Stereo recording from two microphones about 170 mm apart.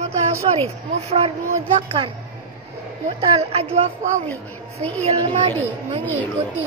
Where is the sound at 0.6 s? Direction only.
35° right (ahead or behind).